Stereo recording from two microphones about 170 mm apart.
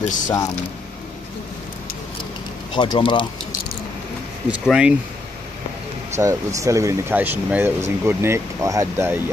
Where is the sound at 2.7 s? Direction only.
30° left (ahead or behind).